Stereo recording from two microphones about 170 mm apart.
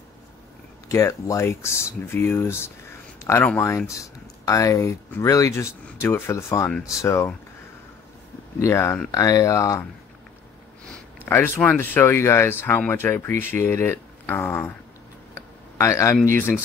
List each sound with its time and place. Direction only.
0.8 s speech: 15° left (ahead or behind)
8.5 s speech: 15° left (ahead or behind)
11.2 s speech: 15° left (ahead or behind)
15.8 s speech: 20° left (ahead or behind)